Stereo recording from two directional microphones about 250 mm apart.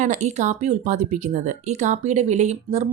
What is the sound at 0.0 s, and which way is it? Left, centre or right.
Speech, right.